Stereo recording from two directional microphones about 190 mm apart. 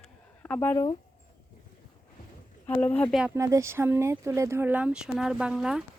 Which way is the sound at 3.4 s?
15° right (ahead or behind).